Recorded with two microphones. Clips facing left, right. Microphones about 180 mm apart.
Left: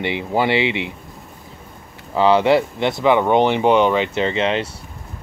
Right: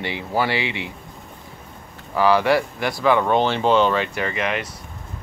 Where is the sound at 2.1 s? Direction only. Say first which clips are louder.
Left 3 dB; 20° left (ahead or behind).